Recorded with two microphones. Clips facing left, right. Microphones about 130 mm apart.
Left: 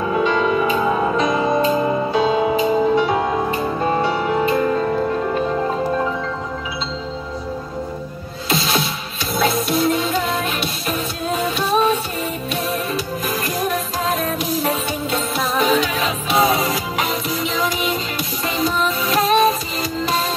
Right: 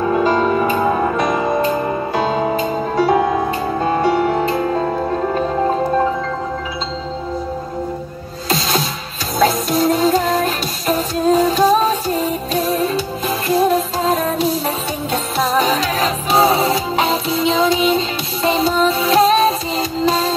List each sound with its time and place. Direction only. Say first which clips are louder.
0.0 s music: right 3 dB; 40° right (ahead or behind)
2.5 s music: left 2 dB; 45° right (ahead or behind)
9.4 s music: right 3 dB; 40° right (ahead or behind)